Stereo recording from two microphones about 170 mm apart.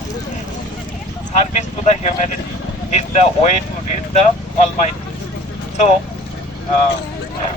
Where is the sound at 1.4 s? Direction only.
40° left (ahead or behind).